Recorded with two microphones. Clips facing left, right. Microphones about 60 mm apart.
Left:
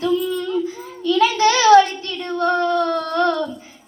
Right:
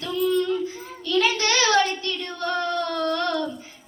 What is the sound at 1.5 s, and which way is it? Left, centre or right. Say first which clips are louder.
Child singing: left 11 dB; left.